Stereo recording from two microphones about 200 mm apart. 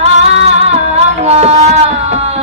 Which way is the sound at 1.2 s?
30° right (ahead or behind).